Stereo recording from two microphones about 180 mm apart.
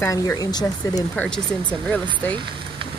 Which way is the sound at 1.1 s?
5° left (ahead or behind).